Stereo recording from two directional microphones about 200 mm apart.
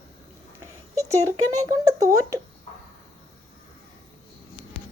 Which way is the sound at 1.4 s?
90° right.